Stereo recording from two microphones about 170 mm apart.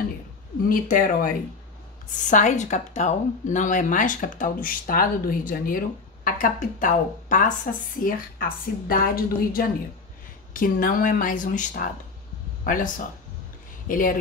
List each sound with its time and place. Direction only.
0.7 s a woman's voice: 55° left (ahead or behind)